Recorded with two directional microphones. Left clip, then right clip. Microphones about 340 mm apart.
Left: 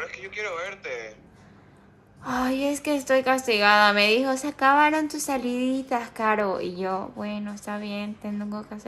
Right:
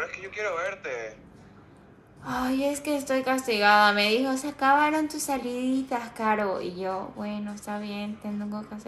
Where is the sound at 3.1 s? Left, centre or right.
Centre.